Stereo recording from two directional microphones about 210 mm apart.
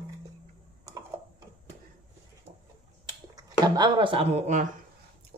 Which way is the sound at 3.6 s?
20° right (ahead or behind).